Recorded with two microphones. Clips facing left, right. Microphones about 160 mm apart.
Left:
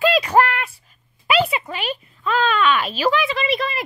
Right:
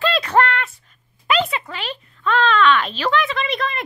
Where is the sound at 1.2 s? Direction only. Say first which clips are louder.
Left 1 dB; 10° left (ahead or behind).